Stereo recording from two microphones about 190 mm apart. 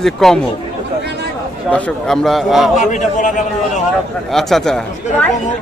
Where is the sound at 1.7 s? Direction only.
5° left (ahead or behind).